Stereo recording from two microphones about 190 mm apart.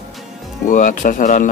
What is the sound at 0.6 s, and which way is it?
Speech, 45° left (ahead or behind).